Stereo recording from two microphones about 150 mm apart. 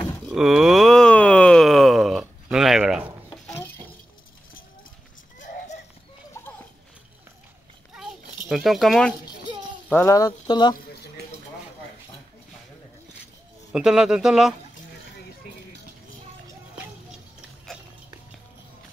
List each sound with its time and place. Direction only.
0.3 s a sound: 5° right (ahead or behind)
3.4 s chink: 15° left (ahead or behind)
7.9 s children playing: 5° right (ahead or behind)
9.8 s speech: 10° left (ahead or behind)
10.1 s speech: 25° left (ahead or behind)
13.7 s a man's voice: 5° right (ahead or behind)